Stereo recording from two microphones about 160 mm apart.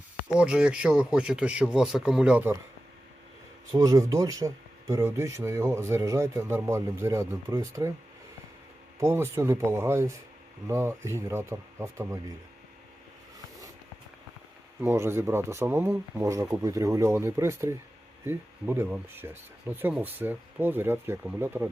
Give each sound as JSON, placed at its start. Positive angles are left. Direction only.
{"t": 0.3, "sound": "speech", "side_deg": -5}
{"t": 3.7, "sound": "speech", "side_deg": -20}
{"t": 9.0, "sound": "speech", "side_deg": -15}
{"t": 14.8, "sound": "speech", "side_deg": -15}